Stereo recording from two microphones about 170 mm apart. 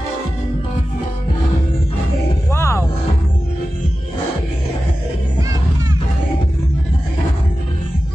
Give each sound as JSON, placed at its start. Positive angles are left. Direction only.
{"t": 2.5, "sound": "music", "side_deg": 15}